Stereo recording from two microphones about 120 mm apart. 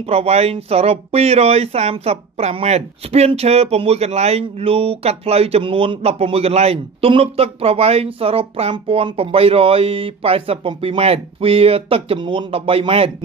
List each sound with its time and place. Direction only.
0.1 s speech: 60° right (ahead or behind)